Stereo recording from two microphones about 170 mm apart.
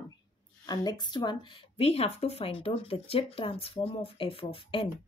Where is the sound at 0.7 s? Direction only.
25° left (ahead or behind).